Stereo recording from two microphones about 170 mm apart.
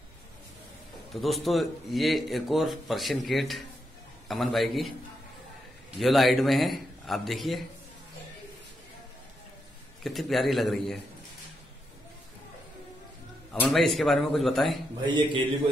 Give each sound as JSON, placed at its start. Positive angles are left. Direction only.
{"t": 1.1, "sound": "a man's voice", "side_deg": 0}
{"t": 5.9, "sound": "a man's voice", "side_deg": 0}
{"t": 10.0, "sound": "a man's voice", "side_deg": 0}
{"t": 13.5, "sound": "a man's voice", "side_deg": 5}
{"t": 15.1, "sound": "a man's voice", "side_deg": -30}